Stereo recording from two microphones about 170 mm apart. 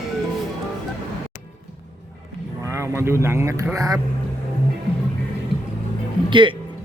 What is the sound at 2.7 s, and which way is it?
Speech, 15° right (ahead or behind).